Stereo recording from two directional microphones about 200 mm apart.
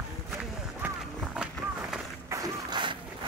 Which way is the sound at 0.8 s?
10° right (ahead or behind).